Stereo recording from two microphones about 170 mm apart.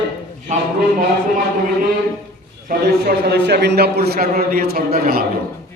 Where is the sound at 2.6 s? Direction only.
60° right (ahead or behind).